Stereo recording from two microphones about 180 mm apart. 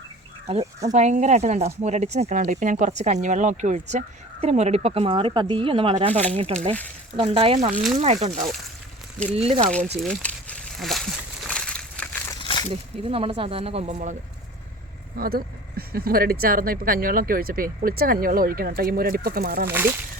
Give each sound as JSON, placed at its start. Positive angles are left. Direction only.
{"t": 0.9, "sound": "speech", "side_deg": -40}
{"t": 10.0, "sound": "a sound", "side_deg": 5}
{"t": 12.4, "sound": "a sound", "side_deg": 30}
{"t": 13.0, "sound": "speech", "side_deg": -30}
{"t": 15.2, "sound": "speech", "side_deg": -55}
{"t": 19.6, "sound": "speech", "side_deg": -10}